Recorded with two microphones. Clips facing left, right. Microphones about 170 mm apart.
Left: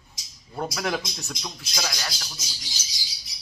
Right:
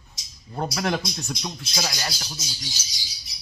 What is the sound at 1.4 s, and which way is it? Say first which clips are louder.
A man's voice: right 3 dB; 20° right (ahead or behind).